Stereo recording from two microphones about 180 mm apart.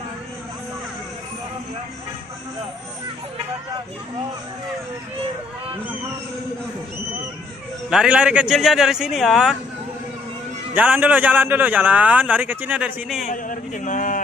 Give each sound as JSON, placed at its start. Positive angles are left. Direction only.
{"t": 7.9, "sound": "a man's voice", "side_deg": -5}
{"t": 10.7, "sound": "a man's voice", "side_deg": -10}
{"t": 13.3, "sound": "speech", "side_deg": 45}